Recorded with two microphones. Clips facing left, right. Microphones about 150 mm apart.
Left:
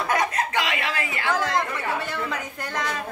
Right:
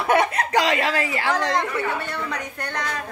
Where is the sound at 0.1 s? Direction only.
35° right (ahead or behind).